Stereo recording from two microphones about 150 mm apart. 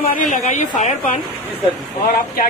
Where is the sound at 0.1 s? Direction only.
60° left (ahead or behind).